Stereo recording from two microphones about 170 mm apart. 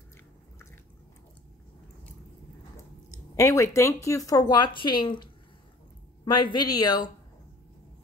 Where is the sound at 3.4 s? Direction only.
15° left (ahead or behind).